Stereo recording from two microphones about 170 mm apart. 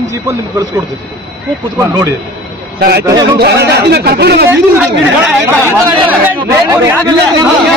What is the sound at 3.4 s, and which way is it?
A man's voice, 75° right (ahead or behind).